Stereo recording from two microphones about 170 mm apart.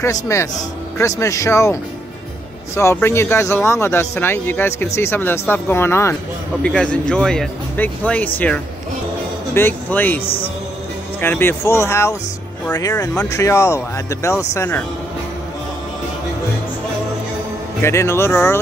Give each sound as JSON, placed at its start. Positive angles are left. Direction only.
{"t": 0.0, "sound": "speech", "side_deg": 15}
{"t": 9.5, "sound": "speech", "side_deg": 10}
{"t": 10.2, "sound": "speech", "side_deg": 35}
{"t": 11.1, "sound": "speech", "side_deg": 10}
{"t": 17.8, "sound": "speech", "side_deg": 15}